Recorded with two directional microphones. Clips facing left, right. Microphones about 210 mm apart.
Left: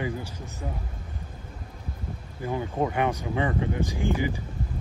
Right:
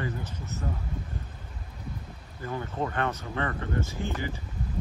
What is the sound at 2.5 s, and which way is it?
Speech, 15° left (ahead or behind).